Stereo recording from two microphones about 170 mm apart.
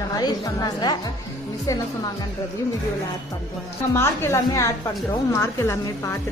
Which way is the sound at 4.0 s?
15° left (ahead or behind).